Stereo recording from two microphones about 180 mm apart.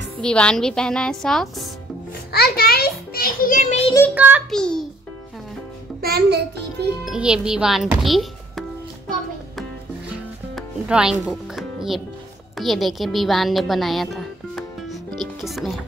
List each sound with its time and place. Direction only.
0.2 s speech: 5° left (ahead or behind)
2.3 s a child's voice: 60° left (ahead or behind)
4.1 s a child's voice: 10° right (ahead or behind)
4.5 s speech: 5° left (ahead or behind)
5.9 s a child's voice: 60° right (ahead or behind)
7.1 s speech: 5° right (ahead or behind)
10.5 s music: 5° right (ahead or behind)
12.5 s speech: centre (ahead or behind)